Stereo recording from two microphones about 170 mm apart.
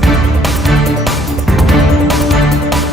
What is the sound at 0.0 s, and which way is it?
Music, centre (ahead or behind).